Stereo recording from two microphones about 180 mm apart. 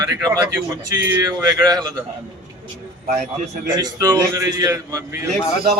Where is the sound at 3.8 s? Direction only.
20° right (ahead or behind).